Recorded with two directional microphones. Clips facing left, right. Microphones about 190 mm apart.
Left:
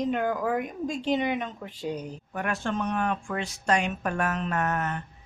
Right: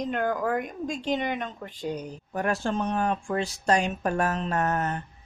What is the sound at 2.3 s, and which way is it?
Speech, 35° right (ahead or behind).